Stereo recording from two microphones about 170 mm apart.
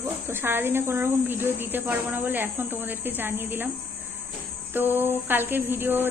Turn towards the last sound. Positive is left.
turn(degrees=-10)  # may be behind; listen again after turning